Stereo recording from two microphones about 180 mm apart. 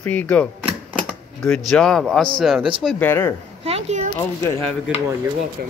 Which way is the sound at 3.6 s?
35° right (ahead or behind).